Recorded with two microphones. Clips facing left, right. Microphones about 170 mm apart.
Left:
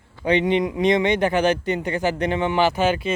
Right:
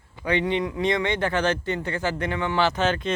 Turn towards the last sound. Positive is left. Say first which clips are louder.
# left 3 dB
turn(degrees=10)  # may be behind; listen again after turning